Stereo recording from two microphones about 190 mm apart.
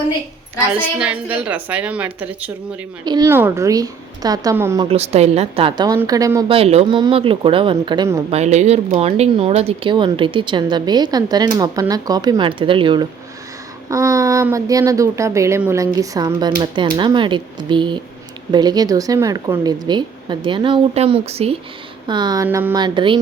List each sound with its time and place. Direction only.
0.9 s a woman's voice: 5° right (ahead or behind)
3.0 s a woman's voice: 20° right (ahead or behind)
4.9 s a woman's voice: 35° right (ahead or behind); by 6.4 s 20° right (ahead or behind)
6.5 s speech: 30° right (ahead or behind)
8.3 s a woman's voice: 35° right (ahead or behind)